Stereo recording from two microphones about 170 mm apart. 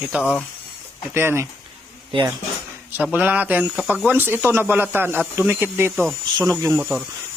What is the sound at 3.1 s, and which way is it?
Speech, 10° right (ahead or behind).